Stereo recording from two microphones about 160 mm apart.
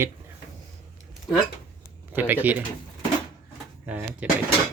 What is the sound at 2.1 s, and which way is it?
Speech, 10° right (ahead or behind).